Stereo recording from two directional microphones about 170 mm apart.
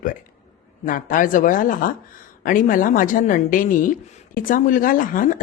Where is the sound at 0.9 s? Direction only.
50° left (ahead or behind).